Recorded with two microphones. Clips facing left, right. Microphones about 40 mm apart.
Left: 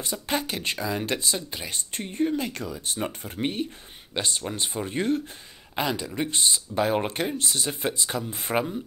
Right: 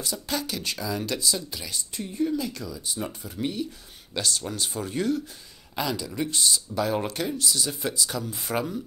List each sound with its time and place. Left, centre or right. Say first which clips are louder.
0.0 s speech: left 2 dB; left
4.1 s speech: even; left